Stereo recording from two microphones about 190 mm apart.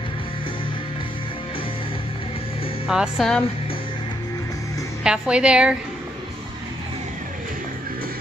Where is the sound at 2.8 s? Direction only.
5° right (ahead or behind).